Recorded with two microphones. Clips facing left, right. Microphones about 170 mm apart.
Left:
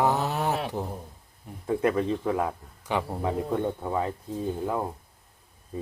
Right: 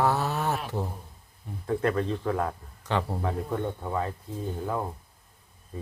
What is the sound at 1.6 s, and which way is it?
Speech, 10° left (ahead or behind).